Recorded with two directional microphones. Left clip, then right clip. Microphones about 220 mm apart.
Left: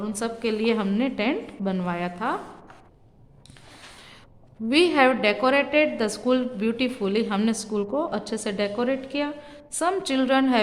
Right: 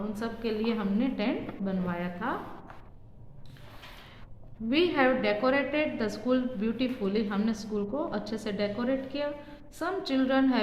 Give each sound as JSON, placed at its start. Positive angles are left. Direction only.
{"t": 0.0, "sound": "a woman's voice", "side_deg": 50}
{"t": 4.7, "sound": "a woman's voice", "side_deg": 45}